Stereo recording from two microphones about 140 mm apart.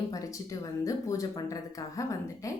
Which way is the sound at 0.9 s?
25° left (ahead or behind).